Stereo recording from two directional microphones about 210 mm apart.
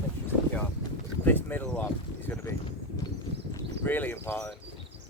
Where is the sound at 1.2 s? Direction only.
10° left (ahead or behind).